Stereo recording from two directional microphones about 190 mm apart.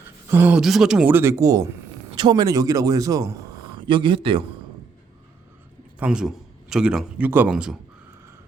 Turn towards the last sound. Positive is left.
turn(degrees=-5)  # may be behind; listen again after turning